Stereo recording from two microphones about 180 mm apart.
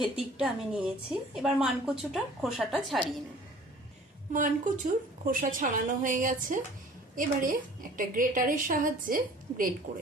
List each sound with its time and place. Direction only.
0.0 s a woman's voice: 5° right (ahead or behind)
4.3 s a woman's voice: 45° right (ahead or behind)